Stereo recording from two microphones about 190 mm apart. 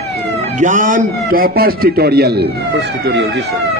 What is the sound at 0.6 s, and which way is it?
A man's voice, 40° right (ahead or behind).